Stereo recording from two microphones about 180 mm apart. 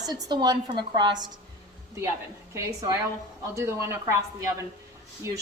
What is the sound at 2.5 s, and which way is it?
Speech, 15° right (ahead or behind).